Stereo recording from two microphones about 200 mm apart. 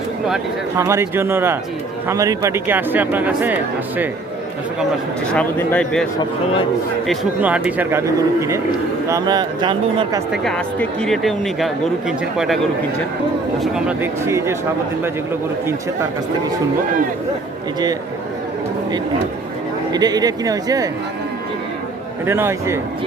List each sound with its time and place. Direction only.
0.8 s speech: 15° right (ahead or behind)
5.3 s speech: 5° left (ahead or behind)
7.1 s speech: 5° right (ahead or behind); by 10.2 s 20° right (ahead or behind)
10.3 s speech: centre (ahead or behind)
13.6 s speech: 5° right (ahead or behind)
19.9 s speech: 20° right (ahead or behind)
22.3 s speech: 10° right (ahead or behind)